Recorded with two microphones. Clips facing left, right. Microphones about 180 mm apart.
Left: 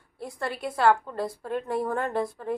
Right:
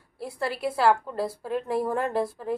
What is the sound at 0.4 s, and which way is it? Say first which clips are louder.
A woman's voice: right 1 dB; 5° right (ahead or behind).